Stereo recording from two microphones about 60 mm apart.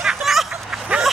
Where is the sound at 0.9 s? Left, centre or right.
Centre.